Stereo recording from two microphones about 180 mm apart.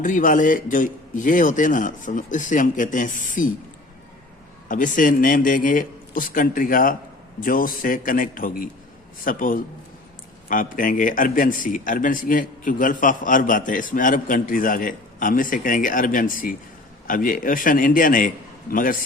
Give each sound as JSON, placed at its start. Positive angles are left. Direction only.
{"t": 0.0, "sound": "a man's voice", "side_deg": 45}
{"t": 4.7, "sound": "a man's voice", "side_deg": 45}